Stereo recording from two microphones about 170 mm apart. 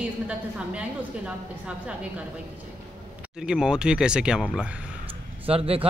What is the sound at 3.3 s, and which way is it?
Speech, 5° right (ahead or behind).